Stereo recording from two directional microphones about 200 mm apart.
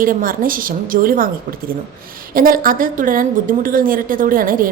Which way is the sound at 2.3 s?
45° right (ahead or behind).